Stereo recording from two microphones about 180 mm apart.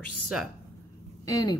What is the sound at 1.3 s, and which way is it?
Speech, 20° left (ahead or behind).